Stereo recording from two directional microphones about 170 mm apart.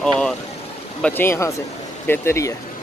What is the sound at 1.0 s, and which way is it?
Speech, 10° left (ahead or behind).